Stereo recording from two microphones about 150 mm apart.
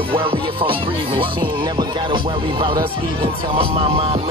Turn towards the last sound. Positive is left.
turn(degrees=-40)  # may be behind; listen again after turning